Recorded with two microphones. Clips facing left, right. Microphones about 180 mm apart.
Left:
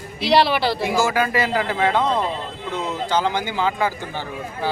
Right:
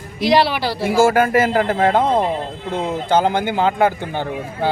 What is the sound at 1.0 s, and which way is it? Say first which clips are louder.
A man's voice: right 8 dB; 50° right (ahead or behind).